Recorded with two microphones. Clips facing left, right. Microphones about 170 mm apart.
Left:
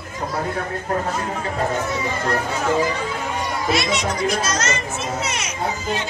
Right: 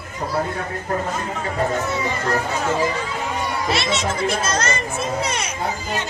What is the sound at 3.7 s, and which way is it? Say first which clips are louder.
A child's voice: left 2 dB; 25° right (ahead or behind).